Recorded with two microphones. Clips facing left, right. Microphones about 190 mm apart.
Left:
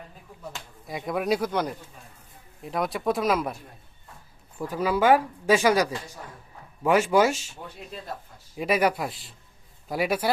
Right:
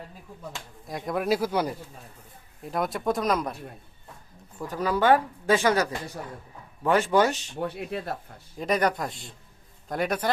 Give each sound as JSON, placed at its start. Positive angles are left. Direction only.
{"t": 0.5, "sound": "speech", "side_deg": 0}
{"t": 2.6, "sound": "speech", "side_deg": 0}
{"t": 7.5, "sound": "speech", "side_deg": -65}
{"t": 8.5, "sound": "speech", "side_deg": 5}